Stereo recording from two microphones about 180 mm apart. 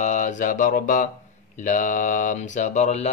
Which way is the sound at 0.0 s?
40° left (ahead or behind).